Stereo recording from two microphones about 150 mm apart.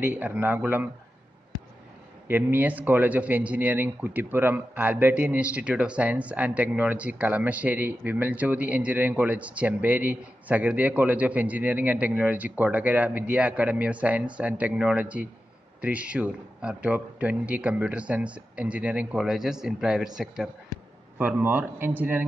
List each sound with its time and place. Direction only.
0.0 s a man's voice: 15° right (ahead or behind)
2.2 s a man's voice: 15° right (ahead or behind)
21.2 s a man's voice: 10° right (ahead or behind)